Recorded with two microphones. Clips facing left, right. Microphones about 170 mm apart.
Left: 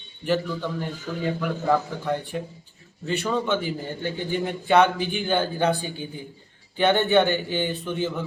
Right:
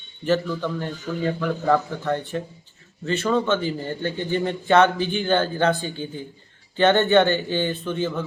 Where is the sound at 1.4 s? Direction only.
10° left (ahead or behind).